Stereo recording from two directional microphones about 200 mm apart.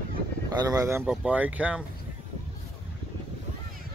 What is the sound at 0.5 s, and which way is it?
Speech, 20° right (ahead or behind).